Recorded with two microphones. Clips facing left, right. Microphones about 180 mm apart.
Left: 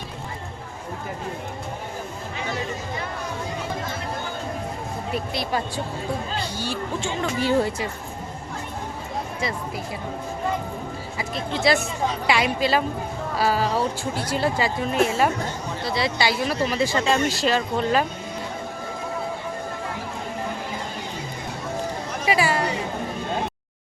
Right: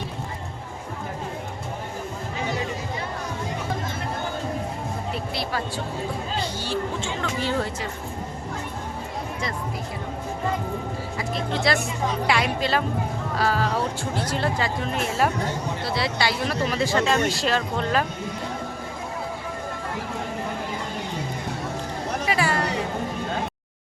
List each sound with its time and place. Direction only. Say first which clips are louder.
5.1 s speech: left 5 dB; 20° left (ahead or behind)
11.2 s speech: left 1 dB; centre (ahead or behind)
22.3 s a sound: left 3 dB; 5° left (ahead or behind)